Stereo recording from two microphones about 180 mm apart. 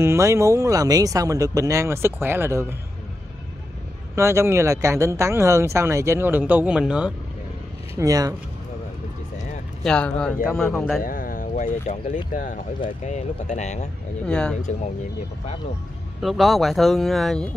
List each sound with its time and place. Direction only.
0.0 s speech: 15° right (ahead or behind)
4.1 s speech: 15° right (ahead or behind)
8.0 s speech: 20° right (ahead or behind)
9.8 s speech: 5° left (ahead or behind)
11.0 s speech: 50° left (ahead or behind)
14.2 s speech: 5° left (ahead or behind)
16.2 s speech: centre (ahead or behind)